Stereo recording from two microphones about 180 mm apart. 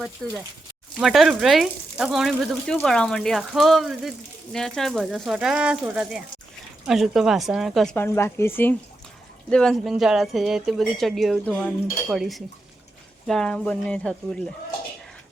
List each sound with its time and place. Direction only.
0.2 s speech: 5° left (ahead or behind)
7.9 s speech: 15° left (ahead or behind)